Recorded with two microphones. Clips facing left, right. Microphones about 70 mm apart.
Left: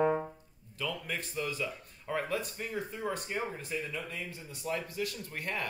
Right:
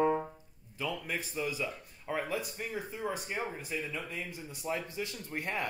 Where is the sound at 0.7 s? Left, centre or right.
Centre.